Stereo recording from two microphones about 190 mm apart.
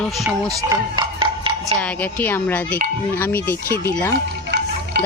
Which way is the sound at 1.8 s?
10° left (ahead or behind).